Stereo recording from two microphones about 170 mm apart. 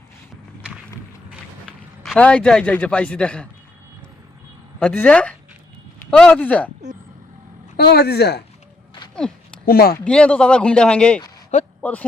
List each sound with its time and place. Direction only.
2.0 s a man's voice: 5° left (ahead or behind)
4.8 s a man's voice: 5° left (ahead or behind)
7.8 s speech: 70° left (ahead or behind)
9.6 s speech: 65° left (ahead or behind)
10.0 s a man's voice: 5° left (ahead or behind)